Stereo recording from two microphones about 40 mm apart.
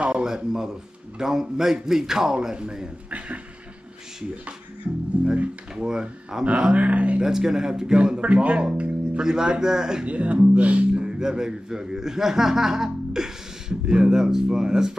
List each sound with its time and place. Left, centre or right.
0.0 s a sound: right
1.1 s a man's voice: centre
3.1 s speech: right
5.2 s music: right
5.8 s a man's voice: centre
6.8 s speech: right
7.2 s a man's voice: centre
8.2 s speech: right
9.2 s a man's voice: centre
10.0 s speech: right
10.9 s speech: right